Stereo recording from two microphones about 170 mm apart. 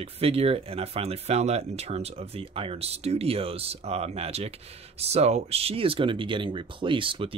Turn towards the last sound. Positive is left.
turn(degrees=-30)  # may be behind; listen again after turning